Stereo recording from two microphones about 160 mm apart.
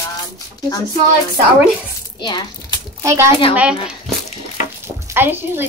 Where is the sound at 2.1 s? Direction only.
30° left (ahead or behind).